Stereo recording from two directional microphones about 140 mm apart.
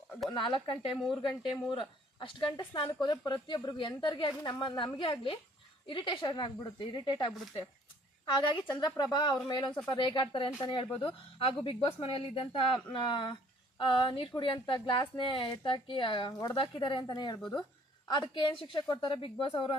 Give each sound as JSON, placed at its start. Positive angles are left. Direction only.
{"t": 0.3, "sound": "speech", "side_deg": 35}
{"t": 0.9, "sound": "a woman's voice", "side_deg": 0}
{"t": 1.2, "sound": "speech", "side_deg": 35}
{"t": 8.3, "sound": "a woman's voice", "side_deg": 30}